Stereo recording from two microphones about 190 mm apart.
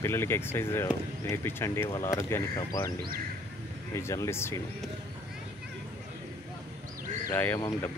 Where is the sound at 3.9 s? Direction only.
15° left (ahead or behind).